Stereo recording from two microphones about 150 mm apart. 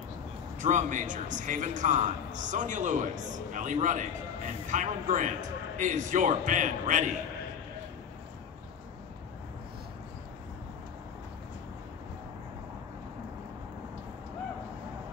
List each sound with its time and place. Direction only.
0.6 s a man's voice: 55° right (ahead or behind)